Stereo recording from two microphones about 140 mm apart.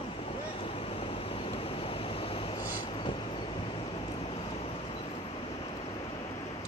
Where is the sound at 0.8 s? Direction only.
45° left (ahead or behind).